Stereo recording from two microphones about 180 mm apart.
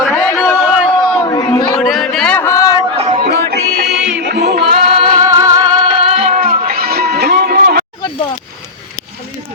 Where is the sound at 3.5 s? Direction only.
65° right (ahead or behind).